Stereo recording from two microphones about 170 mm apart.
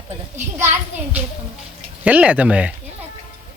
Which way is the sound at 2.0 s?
10° right (ahead or behind).